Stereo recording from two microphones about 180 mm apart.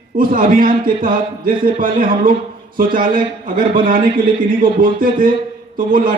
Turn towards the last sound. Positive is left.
turn(degrees=-50)  # may be behind; listen again after turning